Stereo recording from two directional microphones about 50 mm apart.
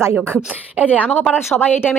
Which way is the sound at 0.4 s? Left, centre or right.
Right.